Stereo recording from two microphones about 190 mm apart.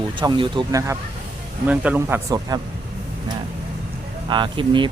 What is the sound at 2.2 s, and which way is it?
Speech, 20° right (ahead or behind).